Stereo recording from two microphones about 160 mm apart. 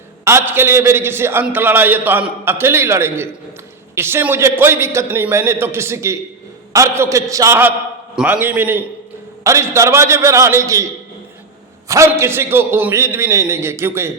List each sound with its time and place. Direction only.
0.3 s a man's voice: 15° right (ahead or behind)
11.9 s a man's voice: 15° right (ahead or behind)